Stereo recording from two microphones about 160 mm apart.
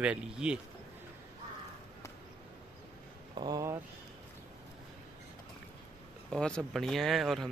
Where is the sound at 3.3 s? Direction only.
25° right (ahead or behind).